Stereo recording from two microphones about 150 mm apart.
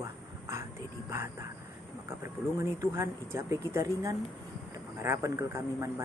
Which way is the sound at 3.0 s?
20° right (ahead or behind).